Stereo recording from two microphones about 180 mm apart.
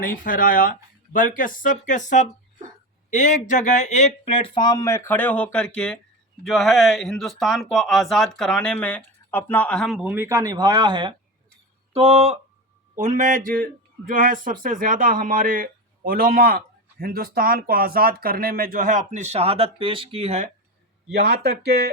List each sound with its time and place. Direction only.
0.0 s speech: 50° left (ahead or behind); by 10.1 s centre (ahead or behind)
10.1 s speech: 15° right (ahead or behind); by 12.4 s 35° right (ahead or behind)
13.0 s a man's voice: 45° right (ahead or behind)
21.1 s speech: 60° right (ahead or behind)